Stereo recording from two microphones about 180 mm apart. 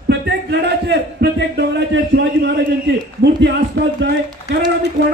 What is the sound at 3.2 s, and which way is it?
Speech, 70° right (ahead or behind).